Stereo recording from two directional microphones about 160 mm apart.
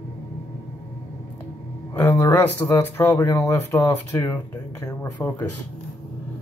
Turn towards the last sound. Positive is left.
turn(degrees=10)  # may be behind; listen again after turning